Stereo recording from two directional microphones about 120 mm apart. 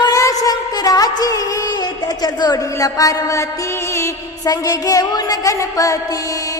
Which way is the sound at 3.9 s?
25° left (ahead or behind).